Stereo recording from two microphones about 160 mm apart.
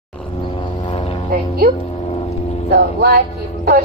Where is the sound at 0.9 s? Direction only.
40° left (ahead or behind).